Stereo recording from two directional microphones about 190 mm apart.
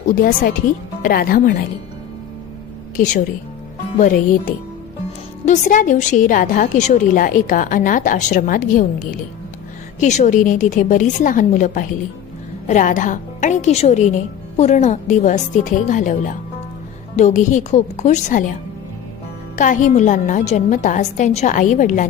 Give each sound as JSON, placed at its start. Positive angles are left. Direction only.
{"t": 0.2, "sound": "a woman's voice", "side_deg": 45}
{"t": 2.9, "sound": "a woman's voice", "side_deg": 40}
{"t": 10.0, "sound": "a woman's voice", "side_deg": 40}
{"t": 19.5, "sound": "a woman's voice", "side_deg": 40}